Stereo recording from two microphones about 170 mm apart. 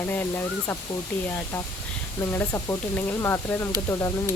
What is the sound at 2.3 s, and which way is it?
Speech, 15° left (ahead or behind).